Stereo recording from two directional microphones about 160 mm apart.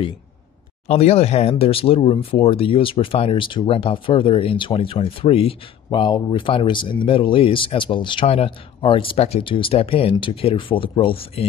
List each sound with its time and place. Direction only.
0.8 s speech: 40° left (ahead or behind)